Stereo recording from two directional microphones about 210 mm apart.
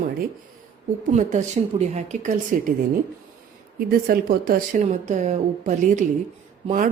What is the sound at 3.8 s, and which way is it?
A woman's voice, 45° right (ahead or behind).